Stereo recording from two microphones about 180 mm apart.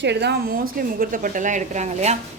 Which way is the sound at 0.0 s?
70° right (ahead or behind).